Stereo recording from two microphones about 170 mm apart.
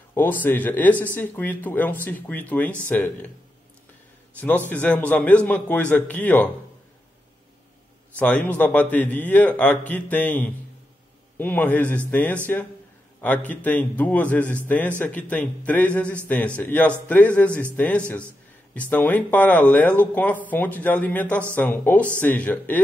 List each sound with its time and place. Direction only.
0.1 s speech: 10° left (ahead or behind)
4.4 s speech: 10° left (ahead or behind)
8.2 s speech: 10° left (ahead or behind)